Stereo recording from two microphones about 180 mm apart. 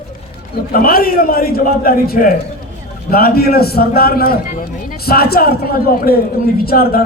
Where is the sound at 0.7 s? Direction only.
55° left (ahead or behind).